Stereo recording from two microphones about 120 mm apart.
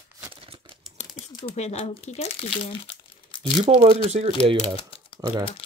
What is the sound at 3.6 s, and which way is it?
Speech, 70° right (ahead or behind).